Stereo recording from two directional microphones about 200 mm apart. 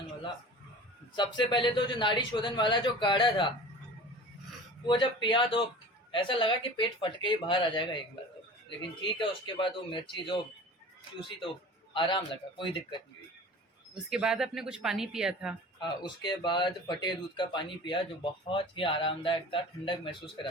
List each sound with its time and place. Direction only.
1.1 s speech: 20° left (ahead or behind)
4.9 s speech: 25° left (ahead or behind)
9.0 s speech: 25° left (ahead or behind)
11.9 s speech: 25° left (ahead or behind)
14.1 s speech: 5° right (ahead or behind)
15.8 s speech: 20° left (ahead or behind)